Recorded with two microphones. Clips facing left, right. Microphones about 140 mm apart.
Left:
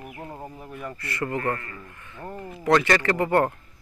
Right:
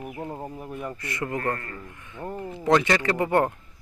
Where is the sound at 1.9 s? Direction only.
15° right (ahead or behind).